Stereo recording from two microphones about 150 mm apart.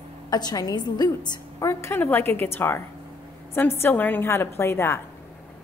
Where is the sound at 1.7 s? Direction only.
15° left (ahead or behind).